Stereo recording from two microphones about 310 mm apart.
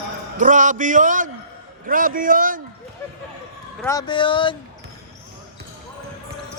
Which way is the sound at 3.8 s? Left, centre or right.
Centre.